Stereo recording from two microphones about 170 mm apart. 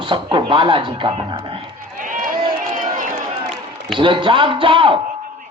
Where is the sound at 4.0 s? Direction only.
30° right (ahead or behind).